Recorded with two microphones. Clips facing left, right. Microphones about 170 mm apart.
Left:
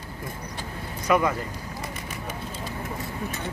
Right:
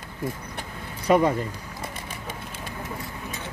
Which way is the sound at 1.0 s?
30° right (ahead or behind).